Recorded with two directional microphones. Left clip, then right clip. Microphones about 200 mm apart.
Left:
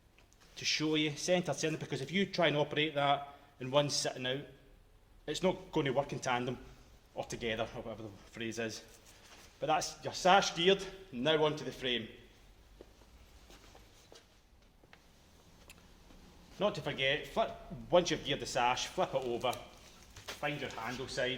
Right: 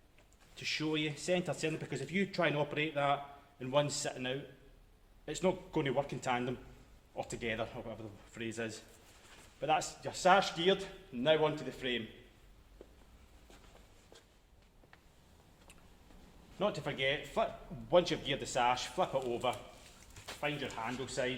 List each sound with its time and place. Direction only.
0.5 s a man's voice: 30° left (ahead or behind)
16.6 s a man's voice: 20° left (ahead or behind)
20.4 s speech: centre (ahead or behind)